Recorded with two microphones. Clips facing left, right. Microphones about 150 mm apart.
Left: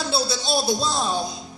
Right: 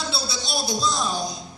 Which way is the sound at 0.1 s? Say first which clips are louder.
Left 6 dB; 55° left (ahead or behind).